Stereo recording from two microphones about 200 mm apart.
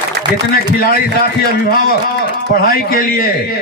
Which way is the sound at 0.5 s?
50° left (ahead or behind).